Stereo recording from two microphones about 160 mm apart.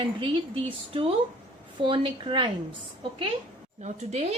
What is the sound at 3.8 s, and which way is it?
Speech, 45° right (ahead or behind).